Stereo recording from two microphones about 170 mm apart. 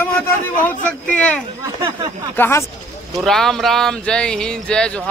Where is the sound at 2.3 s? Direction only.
15° left (ahead or behind).